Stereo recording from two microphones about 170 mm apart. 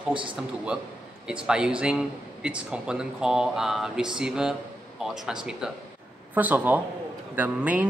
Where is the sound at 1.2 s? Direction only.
5° right (ahead or behind).